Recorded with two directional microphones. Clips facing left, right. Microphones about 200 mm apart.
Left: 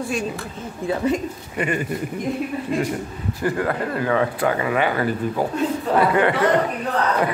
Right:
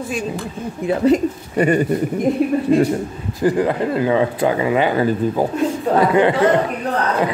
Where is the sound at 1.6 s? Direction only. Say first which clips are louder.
Right 8 dB; 40° right (ahead or behind).